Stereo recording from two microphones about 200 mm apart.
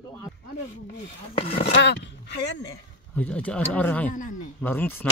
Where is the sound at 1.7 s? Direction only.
60° left (ahead or behind).